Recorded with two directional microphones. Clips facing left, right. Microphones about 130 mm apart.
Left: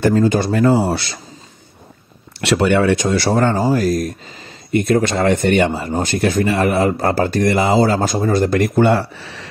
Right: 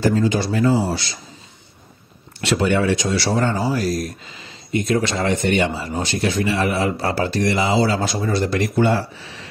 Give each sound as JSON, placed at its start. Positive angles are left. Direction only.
{"t": 0.0, "sound": "speech", "side_deg": 50}
{"t": 2.4, "sound": "a man's voice", "side_deg": 70}